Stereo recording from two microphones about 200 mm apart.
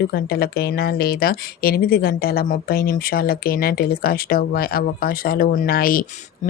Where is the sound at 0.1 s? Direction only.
50° left (ahead or behind).